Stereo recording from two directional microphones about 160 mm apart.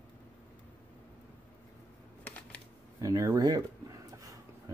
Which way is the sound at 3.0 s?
20° right (ahead or behind).